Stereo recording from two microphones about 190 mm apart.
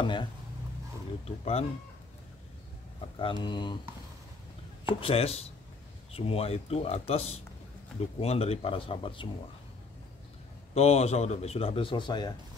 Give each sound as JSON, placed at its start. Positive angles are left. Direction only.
{"t": 0.0, "sound": "a man's voice", "side_deg": 25}
{"t": 3.2, "sound": "speech", "side_deg": 25}
{"t": 4.8, "sound": "a man's voice", "side_deg": 30}
{"t": 10.7, "sound": "a man's voice", "side_deg": 35}